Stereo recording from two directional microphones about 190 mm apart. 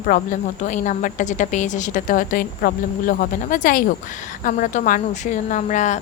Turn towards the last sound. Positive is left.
turn(degrees=40)  # may be behind; listen again after turning